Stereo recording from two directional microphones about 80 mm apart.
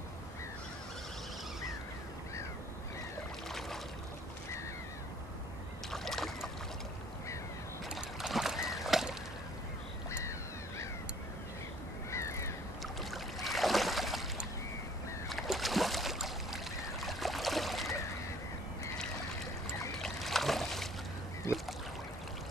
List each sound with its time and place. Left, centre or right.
5.9 s rowboat: centre
7.9 s a sound: centre
12.1 s crow: left
13.1 s a sound: centre
15.2 s boat: centre
20.0 s boat: centre
21.5 s boat: left